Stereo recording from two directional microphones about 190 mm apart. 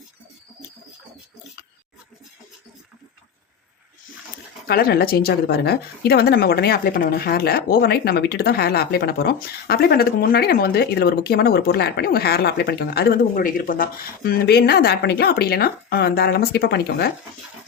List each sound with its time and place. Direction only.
4.7 s speech: 55° left (ahead or behind)